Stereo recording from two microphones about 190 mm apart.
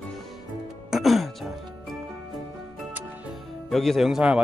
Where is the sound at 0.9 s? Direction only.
Centre (ahead or behind).